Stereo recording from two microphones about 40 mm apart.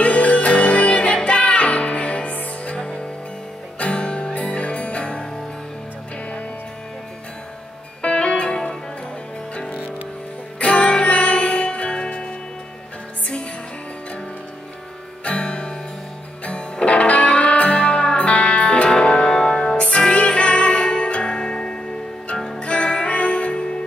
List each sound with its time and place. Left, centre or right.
0.0 s music: left
3.8 s music: left
8.0 s music: left
9.7 s music: right
10.6 s music: left
15.2 s music: left